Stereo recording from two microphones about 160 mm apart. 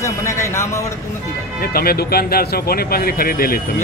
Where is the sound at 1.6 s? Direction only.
70° left (ahead or behind).